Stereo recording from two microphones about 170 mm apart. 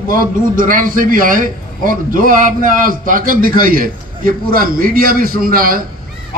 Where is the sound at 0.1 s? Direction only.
55° right (ahead or behind).